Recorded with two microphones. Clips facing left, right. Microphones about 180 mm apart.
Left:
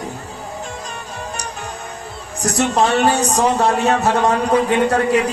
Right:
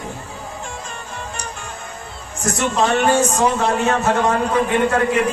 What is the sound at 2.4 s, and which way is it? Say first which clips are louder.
Speech: left 2 dB; 40° left (ahead or behind).